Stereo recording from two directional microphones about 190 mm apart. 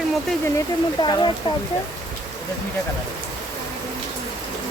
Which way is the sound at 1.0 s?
25° left (ahead or behind).